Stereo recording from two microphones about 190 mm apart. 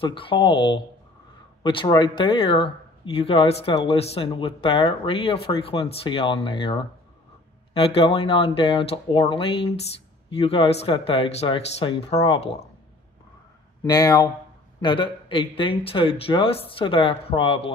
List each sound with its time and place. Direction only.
0.0 s speech: 25° left (ahead or behind)
13.8 s speech: 20° left (ahead or behind)